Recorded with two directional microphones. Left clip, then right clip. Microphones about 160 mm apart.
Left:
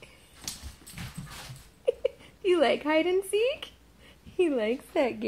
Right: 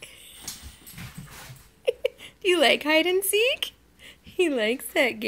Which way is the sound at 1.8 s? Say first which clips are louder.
Right 2 dB; 25° right (ahead or behind).